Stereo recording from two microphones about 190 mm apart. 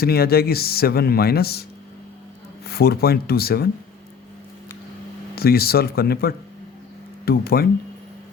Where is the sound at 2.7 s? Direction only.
55° left (ahead or behind).